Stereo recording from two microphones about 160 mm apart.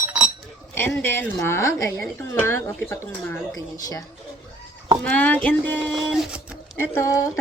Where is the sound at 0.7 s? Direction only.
15° left (ahead or behind).